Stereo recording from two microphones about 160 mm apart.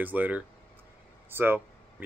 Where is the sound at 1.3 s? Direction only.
15° right (ahead or behind).